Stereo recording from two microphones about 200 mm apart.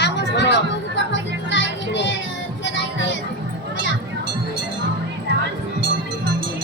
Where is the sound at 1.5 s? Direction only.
65° left (ahead or behind).